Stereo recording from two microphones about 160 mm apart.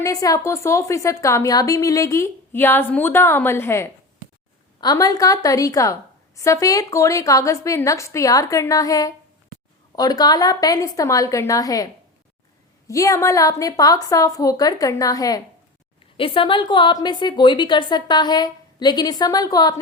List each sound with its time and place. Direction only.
0.0 s a woman's voice: 20° left (ahead or behind)
12.9 s a woman's voice: 20° left (ahead or behind)
16.1 s a woman's voice: 35° left (ahead or behind)